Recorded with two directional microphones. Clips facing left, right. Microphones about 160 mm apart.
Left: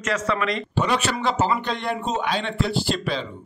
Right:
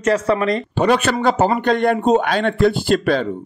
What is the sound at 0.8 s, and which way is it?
A man's voice, 55° right (ahead or behind).